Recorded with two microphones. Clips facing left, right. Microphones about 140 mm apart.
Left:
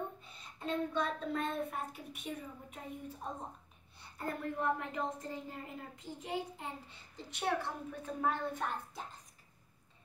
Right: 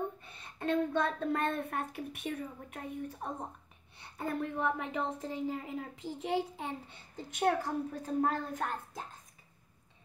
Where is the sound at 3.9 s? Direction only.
85° right.